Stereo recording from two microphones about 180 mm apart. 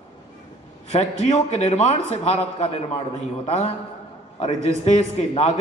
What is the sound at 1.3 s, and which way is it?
A man's voice, 35° left (ahead or behind).